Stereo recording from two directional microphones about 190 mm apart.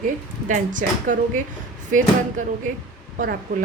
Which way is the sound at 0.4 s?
45° right (ahead or behind).